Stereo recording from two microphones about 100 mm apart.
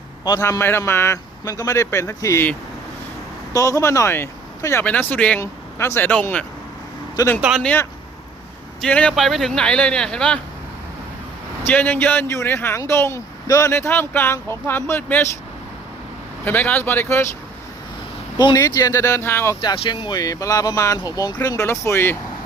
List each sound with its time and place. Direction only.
0.3 s speech: 35° left (ahead or behind)
3.5 s speech: 35° left (ahead or behind); by 5.4 s 15° left (ahead or behind)
5.4 s speech: 25° left (ahead or behind)
7.5 s speech: 10° right (ahead or behind)
8.9 s speech: 10° left (ahead or behind)
9.1 s speech: centre (ahead or behind)
11.6 s speech: 20° left (ahead or behind)
16.4 s speech: 20° left (ahead or behind)
18.3 s speech: 40° left (ahead or behind)
18.9 s speech: 25° left (ahead or behind)
19.8 s speech: 65° left (ahead or behind)
20.1 s speech: 40° left (ahead or behind)